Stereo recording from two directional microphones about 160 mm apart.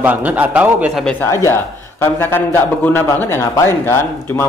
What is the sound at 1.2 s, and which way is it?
A man's voice, 15° left (ahead or behind).